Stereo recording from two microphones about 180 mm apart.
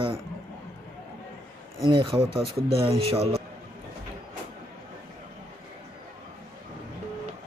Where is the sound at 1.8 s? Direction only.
30° right (ahead or behind).